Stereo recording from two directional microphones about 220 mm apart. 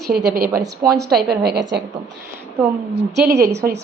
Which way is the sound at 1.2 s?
45° right (ahead or behind).